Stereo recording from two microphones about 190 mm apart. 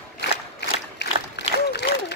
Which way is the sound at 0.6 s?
65° left (ahead or behind).